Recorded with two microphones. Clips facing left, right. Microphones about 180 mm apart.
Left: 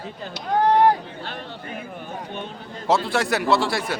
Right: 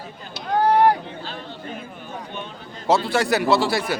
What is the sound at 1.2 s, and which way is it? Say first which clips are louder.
Speech: even; 65° left (ahead or behind).